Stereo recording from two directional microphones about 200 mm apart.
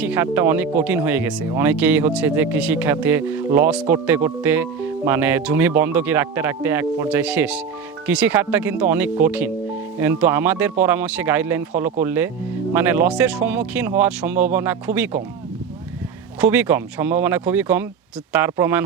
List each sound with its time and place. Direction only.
0.0 s speech: 10° right (ahead or behind)
16.4 s speech: 10° right (ahead or behind)